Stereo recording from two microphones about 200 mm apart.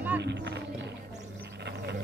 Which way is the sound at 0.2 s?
60° right (ahead or behind).